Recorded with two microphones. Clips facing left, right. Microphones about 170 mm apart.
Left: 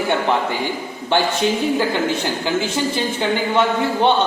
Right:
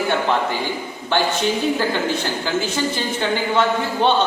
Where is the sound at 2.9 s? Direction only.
20° left (ahead or behind).